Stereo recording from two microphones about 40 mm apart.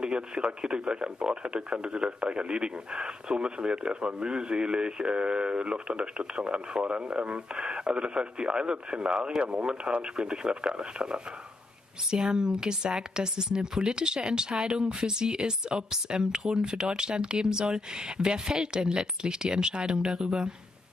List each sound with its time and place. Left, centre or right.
0.0 s speech: right
12.3 s speech: centre